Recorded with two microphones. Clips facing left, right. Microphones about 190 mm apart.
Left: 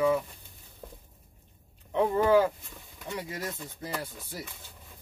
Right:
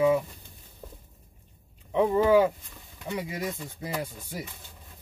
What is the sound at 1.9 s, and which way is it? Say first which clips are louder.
Speech: right 2 dB; 10° right (ahead or behind).